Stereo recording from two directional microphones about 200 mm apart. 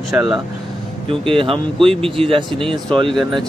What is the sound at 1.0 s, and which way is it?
Speech, 25° right (ahead or behind).